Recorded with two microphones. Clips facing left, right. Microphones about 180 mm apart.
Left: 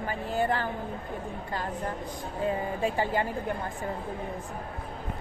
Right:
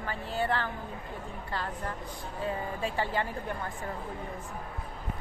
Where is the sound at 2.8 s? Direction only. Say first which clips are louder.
Left 4 dB; 15° left (ahead or behind).